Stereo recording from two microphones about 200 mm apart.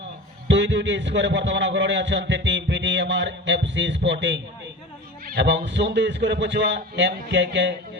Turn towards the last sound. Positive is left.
turn(degrees=-60)  # may be behind; listen again after turning